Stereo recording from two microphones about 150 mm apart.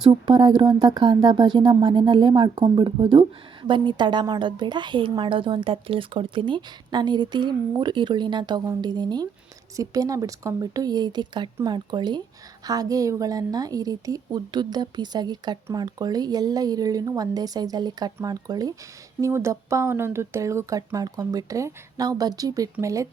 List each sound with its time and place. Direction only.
0.0 s a woman's voice: 30° right (ahead or behind)